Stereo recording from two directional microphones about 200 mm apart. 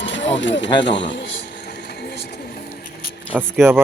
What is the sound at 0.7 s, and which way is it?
Speech, 60° left (ahead or behind).